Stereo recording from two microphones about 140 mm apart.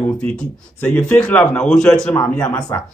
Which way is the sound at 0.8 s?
10° left (ahead or behind).